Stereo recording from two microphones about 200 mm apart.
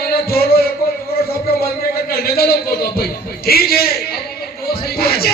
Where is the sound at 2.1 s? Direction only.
50° left (ahead or behind).